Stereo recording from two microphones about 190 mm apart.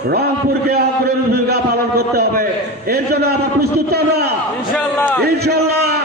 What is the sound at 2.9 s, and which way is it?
A man's voice, 55° right (ahead or behind).